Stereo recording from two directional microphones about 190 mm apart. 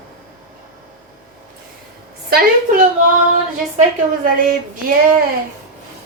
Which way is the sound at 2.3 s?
55° right (ahead or behind).